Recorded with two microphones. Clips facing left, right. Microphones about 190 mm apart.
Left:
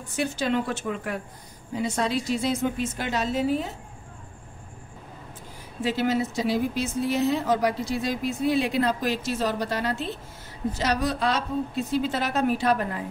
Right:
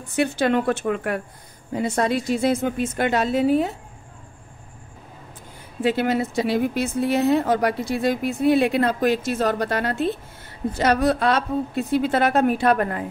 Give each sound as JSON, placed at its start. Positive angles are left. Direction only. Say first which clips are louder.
{"t": 0.1, "sound": "a woman's voice", "louder": "right 6 dB", "side_deg": -65}
{"t": 5.8, "sound": "a woman's voice", "louder": "right 4 dB", "side_deg": -60}